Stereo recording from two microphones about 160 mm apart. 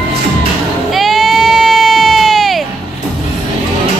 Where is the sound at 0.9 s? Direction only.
Centre (ahead or behind).